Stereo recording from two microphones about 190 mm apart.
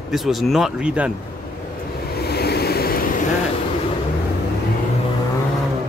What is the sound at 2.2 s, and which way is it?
Vehicle, 55° left (ahead or behind).